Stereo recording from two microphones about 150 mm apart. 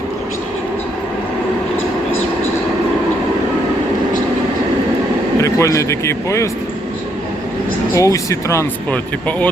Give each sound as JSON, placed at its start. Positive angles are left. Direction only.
{"t": 5.4, "sound": "speech", "side_deg": 20}
{"t": 7.9, "sound": "speech", "side_deg": 20}